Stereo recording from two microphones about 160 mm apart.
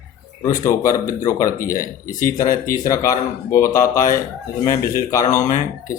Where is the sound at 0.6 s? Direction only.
20° left (ahead or behind).